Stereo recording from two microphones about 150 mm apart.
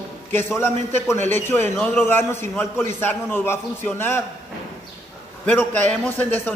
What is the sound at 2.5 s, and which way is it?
Speech, 5° left (ahead or behind).